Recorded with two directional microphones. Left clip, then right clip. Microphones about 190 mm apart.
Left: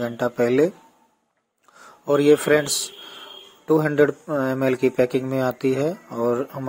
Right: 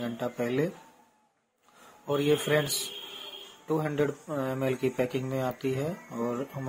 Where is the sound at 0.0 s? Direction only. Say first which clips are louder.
Left 10 dB; 35° left (ahead or behind).